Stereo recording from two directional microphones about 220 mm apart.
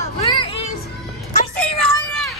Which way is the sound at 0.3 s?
25° left (ahead or behind).